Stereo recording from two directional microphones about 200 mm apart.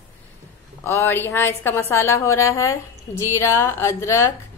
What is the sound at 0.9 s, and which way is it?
A woman's voice, 10° left (ahead or behind).